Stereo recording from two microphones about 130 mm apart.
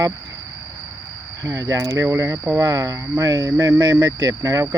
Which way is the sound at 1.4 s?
25° right (ahead or behind).